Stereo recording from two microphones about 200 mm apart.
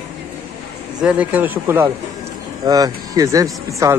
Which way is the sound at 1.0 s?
5° right (ahead or behind).